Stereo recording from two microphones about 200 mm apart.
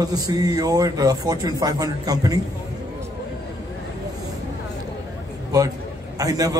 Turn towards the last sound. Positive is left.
turn(degrees=-20)  # may be behind; listen again after turning